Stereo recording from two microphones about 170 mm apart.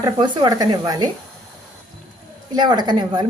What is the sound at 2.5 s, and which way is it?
Speech, 25° right (ahead or behind).